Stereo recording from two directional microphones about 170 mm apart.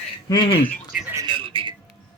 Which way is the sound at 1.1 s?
25° right (ahead or behind).